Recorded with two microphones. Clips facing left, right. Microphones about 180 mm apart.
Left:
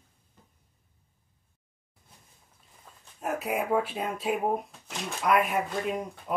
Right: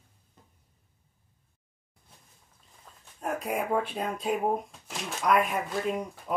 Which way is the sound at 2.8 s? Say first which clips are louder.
Even; 5° left (ahead or behind).